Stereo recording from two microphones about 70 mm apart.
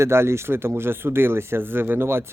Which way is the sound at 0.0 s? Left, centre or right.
Right.